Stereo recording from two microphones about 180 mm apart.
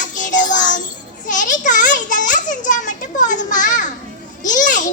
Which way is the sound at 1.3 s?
45° left (ahead or behind).